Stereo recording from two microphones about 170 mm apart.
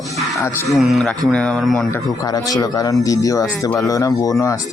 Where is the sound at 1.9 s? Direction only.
20° left (ahead or behind).